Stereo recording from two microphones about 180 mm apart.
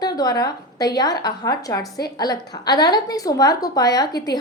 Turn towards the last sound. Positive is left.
turn(degrees=20)  # may be behind; listen again after turning